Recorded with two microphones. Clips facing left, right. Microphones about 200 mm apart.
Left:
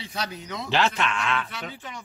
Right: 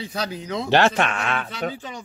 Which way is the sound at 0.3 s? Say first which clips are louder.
Right 7 dB; 30° right (ahead or behind).